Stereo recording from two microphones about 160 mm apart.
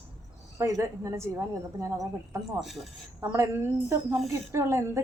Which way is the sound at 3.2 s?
20° right (ahead or behind).